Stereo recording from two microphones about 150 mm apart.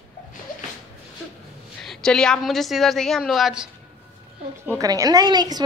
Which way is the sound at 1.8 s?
Centre (ahead or behind).